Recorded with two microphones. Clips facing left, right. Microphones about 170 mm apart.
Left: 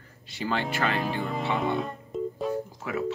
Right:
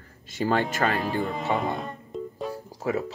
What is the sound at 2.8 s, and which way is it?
Speech, 35° right (ahead or behind).